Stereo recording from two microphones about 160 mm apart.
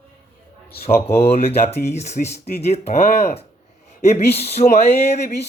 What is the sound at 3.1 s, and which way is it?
Speech, 70° left (ahead or behind).